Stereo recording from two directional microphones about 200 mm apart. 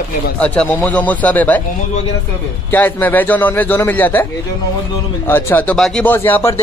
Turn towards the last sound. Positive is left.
turn(degrees=10)  # may be behind; listen again after turning